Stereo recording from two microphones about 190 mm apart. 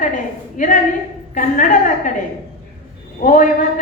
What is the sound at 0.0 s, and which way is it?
A woman's voice, 45° left (ahead or behind).